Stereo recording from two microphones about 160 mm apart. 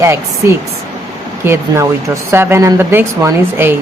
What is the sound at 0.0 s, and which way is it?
Speech, 15° right (ahead or behind).